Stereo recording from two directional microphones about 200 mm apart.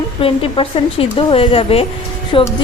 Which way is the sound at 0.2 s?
25° left (ahead or behind).